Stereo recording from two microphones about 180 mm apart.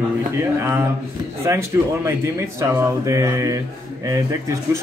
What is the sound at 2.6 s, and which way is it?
Speech, 15° right (ahead or behind).